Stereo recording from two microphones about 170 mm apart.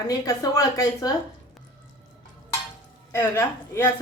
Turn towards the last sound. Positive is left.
turn(degrees=15)  # may be behind; listen again after turning